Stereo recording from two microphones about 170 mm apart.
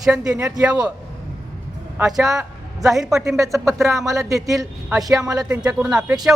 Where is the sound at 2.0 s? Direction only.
Centre (ahead or behind).